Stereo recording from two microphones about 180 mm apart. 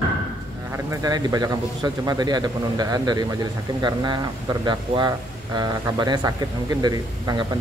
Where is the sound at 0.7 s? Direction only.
15° right (ahead or behind).